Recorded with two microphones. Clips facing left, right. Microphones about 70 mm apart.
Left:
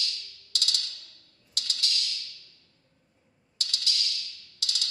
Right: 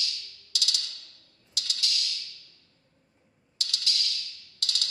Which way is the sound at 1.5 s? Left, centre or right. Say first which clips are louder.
Even; left.